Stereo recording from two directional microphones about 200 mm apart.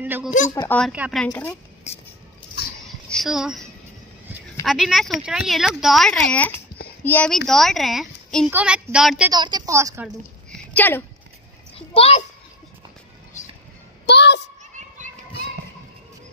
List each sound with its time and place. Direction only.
0.0 s speech: 10° right (ahead or behind)
0.7 s speech: 5° left (ahead or behind)
0.9 s speech: 5° right (ahead or behind)
3.1 s speech: centre (ahead or behind)
4.6 s a child's voice: centre (ahead or behind)
9.3 s a woman's voice: 20° right (ahead or behind)
10.0 s a sound: 5° left (ahead or behind)
11.9 s a child's voice: 30° left (ahead or behind)
14.0 s a sound: 55° left (ahead or behind)